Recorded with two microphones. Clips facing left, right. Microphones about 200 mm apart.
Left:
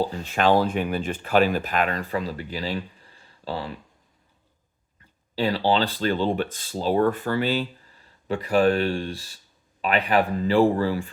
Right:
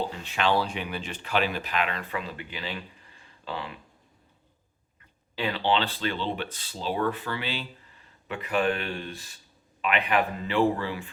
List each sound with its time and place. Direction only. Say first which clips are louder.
0.0 s speech: left 6 dB; 40° left (ahead or behind)
5.3 s speech: left 4 dB; 35° left (ahead or behind)